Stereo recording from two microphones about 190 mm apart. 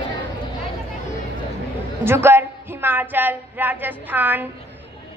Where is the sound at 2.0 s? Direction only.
10° right (ahead or behind).